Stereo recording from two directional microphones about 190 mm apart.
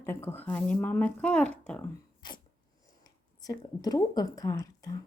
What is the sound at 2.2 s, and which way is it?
Dog, 25° left (ahead or behind).